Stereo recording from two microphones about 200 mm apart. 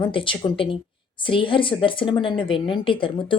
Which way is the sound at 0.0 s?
25° left (ahead or behind).